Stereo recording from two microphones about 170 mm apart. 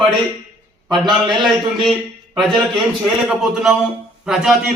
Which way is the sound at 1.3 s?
30° right (ahead or behind).